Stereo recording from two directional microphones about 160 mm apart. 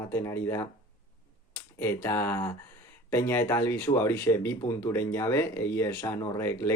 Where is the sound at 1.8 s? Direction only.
15° left (ahead or behind).